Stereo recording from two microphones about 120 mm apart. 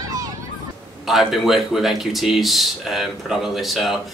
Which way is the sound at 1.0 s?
Centre (ahead or behind).